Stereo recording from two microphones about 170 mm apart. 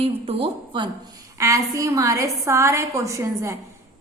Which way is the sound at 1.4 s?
20° right (ahead or behind).